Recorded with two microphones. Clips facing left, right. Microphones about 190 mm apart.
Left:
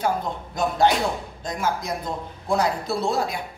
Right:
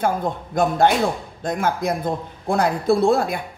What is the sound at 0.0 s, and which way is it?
A man's voice, 55° right (ahead or behind).